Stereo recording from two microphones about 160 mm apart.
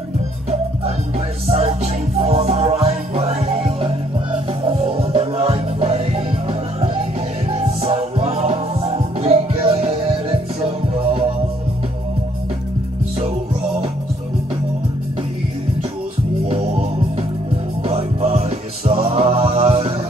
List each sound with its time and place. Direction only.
1.5 s music: 45° right (ahead or behind)
16.4 s music: 35° right (ahead or behind)
17.8 s music: 40° right (ahead or behind)